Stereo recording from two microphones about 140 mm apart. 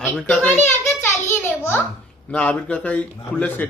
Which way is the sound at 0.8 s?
20° left (ahead or behind).